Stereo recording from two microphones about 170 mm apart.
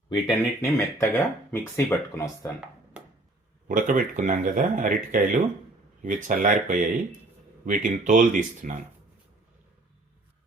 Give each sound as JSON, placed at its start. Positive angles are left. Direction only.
{"t": 0.1, "sound": "speech", "side_deg": 20}
{"t": 3.7, "sound": "speech", "side_deg": -50}